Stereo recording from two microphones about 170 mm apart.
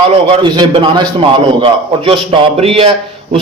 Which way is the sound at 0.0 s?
30° right (ahead or behind).